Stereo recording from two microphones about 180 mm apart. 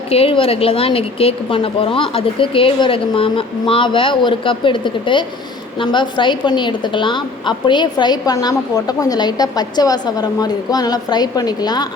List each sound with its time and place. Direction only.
0.1 s a woman's voice: 30° left (ahead or behind)